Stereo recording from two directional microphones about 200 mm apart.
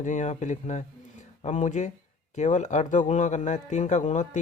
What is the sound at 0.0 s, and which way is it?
A man's voice, 35° left (ahead or behind).